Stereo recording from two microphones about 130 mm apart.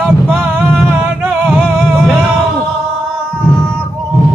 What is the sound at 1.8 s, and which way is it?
Music, 10° right (ahead or behind).